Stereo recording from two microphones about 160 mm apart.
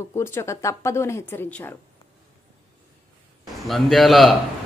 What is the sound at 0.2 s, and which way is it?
Speech, 15° left (ahead or behind).